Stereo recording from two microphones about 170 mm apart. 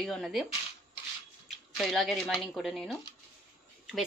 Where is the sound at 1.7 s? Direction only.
Centre (ahead or behind).